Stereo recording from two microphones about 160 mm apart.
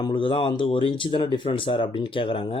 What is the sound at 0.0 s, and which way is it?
Speech, 30° left (ahead or behind).